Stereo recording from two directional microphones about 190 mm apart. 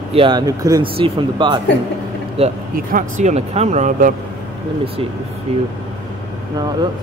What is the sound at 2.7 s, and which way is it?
Speech, 45° right (ahead or behind).